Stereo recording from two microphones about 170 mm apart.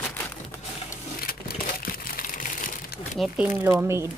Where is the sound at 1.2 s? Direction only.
60° left (ahead or behind).